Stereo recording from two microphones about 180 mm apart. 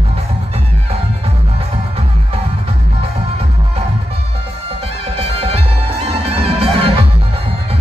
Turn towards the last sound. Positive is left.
turn(degrees=-35)  # may be behind; listen again after turning